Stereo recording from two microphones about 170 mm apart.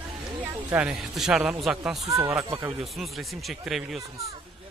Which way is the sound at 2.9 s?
Centre (ahead or behind).